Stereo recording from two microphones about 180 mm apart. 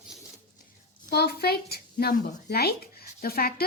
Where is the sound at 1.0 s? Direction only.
60° left (ahead or behind).